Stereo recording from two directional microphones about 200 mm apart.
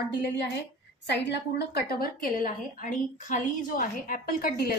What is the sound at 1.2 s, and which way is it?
A woman's voice, 55° left (ahead or behind).